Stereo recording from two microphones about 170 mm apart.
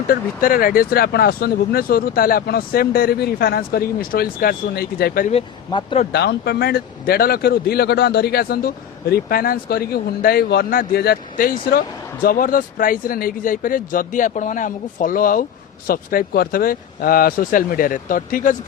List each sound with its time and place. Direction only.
0.1 s speech: 55° left (ahead or behind)
5.3 s speech: 35° left (ahead or behind)
6.1 s speech: 75° left (ahead or behind); by 18.5 s 55° left (ahead or behind)